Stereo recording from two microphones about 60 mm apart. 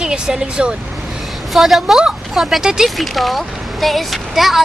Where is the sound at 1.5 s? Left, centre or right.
Centre.